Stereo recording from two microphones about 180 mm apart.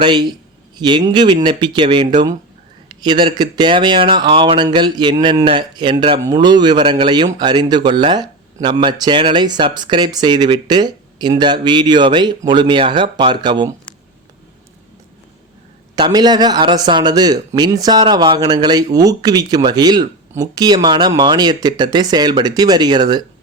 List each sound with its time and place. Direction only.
0.0 s speech: 25° right (ahead or behind)
16.0 s speech: 25° right (ahead or behind)